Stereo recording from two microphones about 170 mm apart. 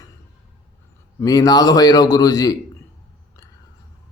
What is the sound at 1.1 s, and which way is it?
A man's voice, 20° left (ahead or behind).